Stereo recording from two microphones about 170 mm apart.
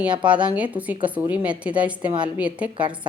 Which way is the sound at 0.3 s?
5° right (ahead or behind).